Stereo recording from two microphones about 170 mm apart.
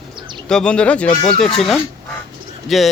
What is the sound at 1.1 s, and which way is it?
Speech, 25° left (ahead or behind).